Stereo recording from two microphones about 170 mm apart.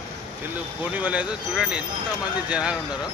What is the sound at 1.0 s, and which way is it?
Speech, 5° right (ahead or behind).